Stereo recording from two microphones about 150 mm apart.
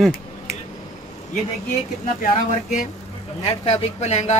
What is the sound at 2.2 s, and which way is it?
Speech, 65° left (ahead or behind).